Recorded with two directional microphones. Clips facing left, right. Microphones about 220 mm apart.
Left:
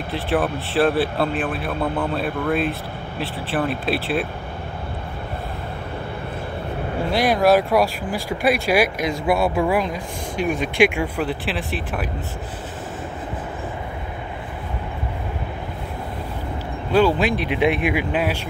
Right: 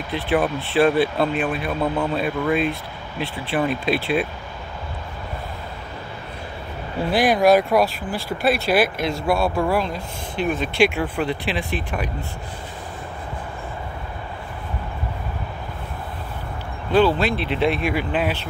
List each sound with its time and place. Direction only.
0.1 s speech: centre (ahead or behind)
7.1 s speech: centre (ahead or behind)
16.9 s speech: 10° left (ahead or behind)